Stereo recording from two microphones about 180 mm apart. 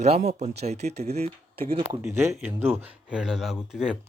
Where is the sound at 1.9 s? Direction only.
15° right (ahead or behind).